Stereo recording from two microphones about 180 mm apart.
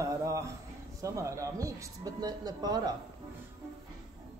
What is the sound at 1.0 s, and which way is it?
Speech, 15° right (ahead or behind).